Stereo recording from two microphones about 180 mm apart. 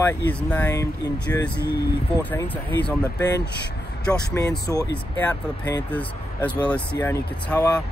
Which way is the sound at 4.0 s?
5° left (ahead or behind).